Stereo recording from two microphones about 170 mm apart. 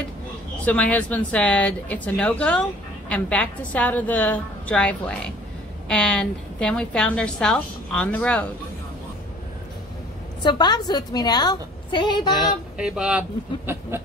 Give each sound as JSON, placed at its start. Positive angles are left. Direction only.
{"t": 0.7, "sound": "a woman's voice", "side_deg": 5}
{"t": 10.4, "sound": "a woman's voice", "side_deg": 25}
{"t": 12.4, "sound": "a woman's voice", "side_deg": -5}
{"t": 13.7, "sound": "a sound", "side_deg": -15}